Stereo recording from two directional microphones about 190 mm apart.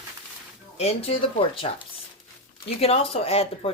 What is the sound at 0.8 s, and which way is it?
Speech, 30° left (ahead or behind).